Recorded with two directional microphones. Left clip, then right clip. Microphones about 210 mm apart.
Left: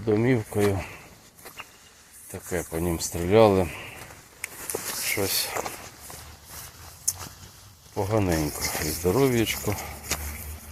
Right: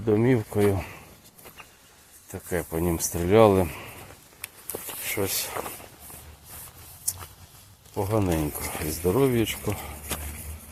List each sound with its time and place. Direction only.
0.0 s speech: 15° right (ahead or behind)
2.5 s speech: 15° right (ahead or behind)
5.0 s speech: 10° right (ahead or behind)
7.9 s speech: 10° right (ahead or behind)
9.7 s walk: 5° right (ahead or behind)